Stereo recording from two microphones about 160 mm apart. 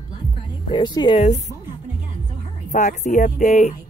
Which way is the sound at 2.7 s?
50° left (ahead or behind).